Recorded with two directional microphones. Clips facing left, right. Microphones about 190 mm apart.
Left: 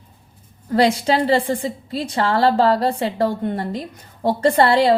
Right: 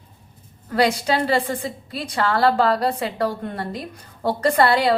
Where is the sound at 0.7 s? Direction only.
25° left (ahead or behind).